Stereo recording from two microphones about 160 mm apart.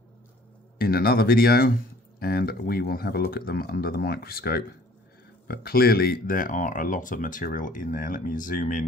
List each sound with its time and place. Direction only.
0.7 s speech: 70° left (ahead or behind)